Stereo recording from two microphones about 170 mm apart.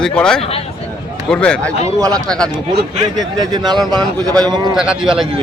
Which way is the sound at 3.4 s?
25° right (ahead or behind).